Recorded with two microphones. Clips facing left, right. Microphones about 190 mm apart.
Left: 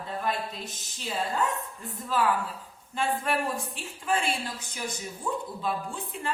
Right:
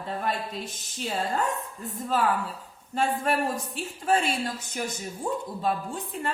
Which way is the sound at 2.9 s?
40° right (ahead or behind).